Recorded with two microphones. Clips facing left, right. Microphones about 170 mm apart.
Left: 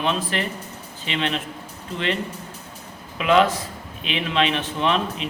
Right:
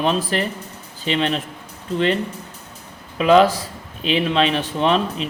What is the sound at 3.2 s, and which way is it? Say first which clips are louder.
A man's voice: right 4 dB; 35° right (ahead or behind).